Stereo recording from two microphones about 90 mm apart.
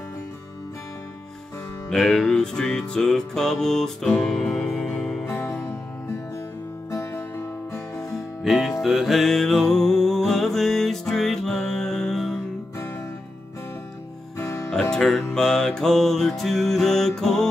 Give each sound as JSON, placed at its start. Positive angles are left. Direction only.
{"t": 1.9, "sound": "music", "side_deg": 0}
{"t": 5.2, "sound": "music", "side_deg": 30}
{"t": 6.9, "sound": "music", "side_deg": 30}
{"t": 8.5, "sound": "music", "side_deg": -5}
{"t": 14.4, "sound": "music", "side_deg": 30}
{"t": 14.7, "sound": "music", "side_deg": 5}